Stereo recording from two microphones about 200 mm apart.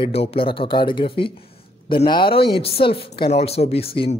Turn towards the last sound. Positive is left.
turn(degrees=30)  # may be behind; listen again after turning